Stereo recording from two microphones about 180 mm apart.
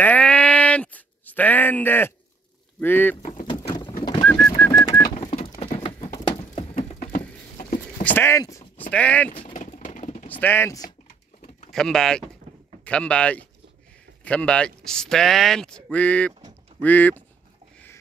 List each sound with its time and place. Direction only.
0.0 s a sound: 10° left (ahead or behind)
2.8 s speech: 10° left (ahead or behind)
3.2 s vehicle: 45° left (ahead or behind)
4.2 s bird: 10° left (ahead or behind)
5.8 s horse: 30° left (ahead or behind)
6.5 s a sound: 35° left (ahead or behind)
8.0 s a sound: 10° left (ahead or behind)
8.9 s speech: 10° left (ahead or behind)
9.5 s vehicle: 45° left (ahead or behind)
10.3 s speech: 10° left (ahead or behind)
11.7 s speech: 5° left (ahead or behind)